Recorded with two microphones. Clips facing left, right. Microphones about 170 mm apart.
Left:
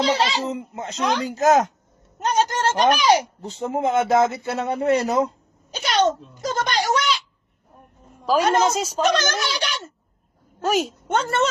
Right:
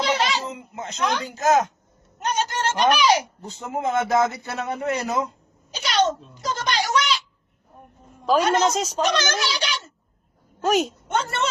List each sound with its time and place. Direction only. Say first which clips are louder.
0.0 s a man's voice: left 2 dB; 30° left (ahead or behind)
2.2 s speech: left 4 dB; 40° left (ahead or behind)
3.5 s a man's voice: left 3 dB; 25° left (ahead or behind)
6.4 s a sound: left 2 dB; 50° left (ahead or behind)
8.2 s a woman's voice: left 1 dB; 5° left (ahead or behind)
9.0 s speech: left 2 dB; 45° left (ahead or behind)
10.6 s a woman's voice: right 1 dB; centre (ahead or behind)
11.1 s speech: left 5 dB; 45° left (ahead or behind)